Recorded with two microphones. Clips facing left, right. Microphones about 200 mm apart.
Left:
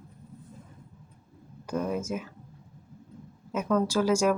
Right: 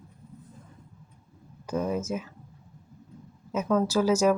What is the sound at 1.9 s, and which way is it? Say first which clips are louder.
Speech: right 1 dB; 10° left (ahead or behind).